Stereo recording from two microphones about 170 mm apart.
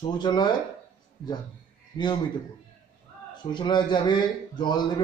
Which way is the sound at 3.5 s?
25° left (ahead or behind).